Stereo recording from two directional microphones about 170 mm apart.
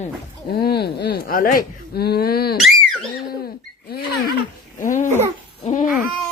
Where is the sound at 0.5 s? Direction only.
70° left (ahead or behind).